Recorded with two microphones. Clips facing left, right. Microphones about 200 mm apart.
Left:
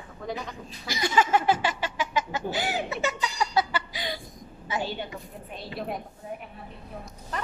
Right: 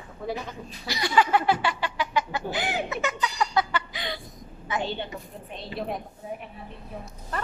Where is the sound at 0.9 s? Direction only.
45° left (ahead or behind).